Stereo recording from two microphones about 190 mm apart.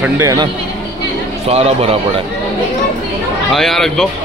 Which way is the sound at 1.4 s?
35° right (ahead or behind).